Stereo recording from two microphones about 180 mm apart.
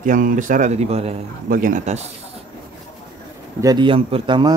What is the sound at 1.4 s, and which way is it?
Speech, 50° right (ahead or behind).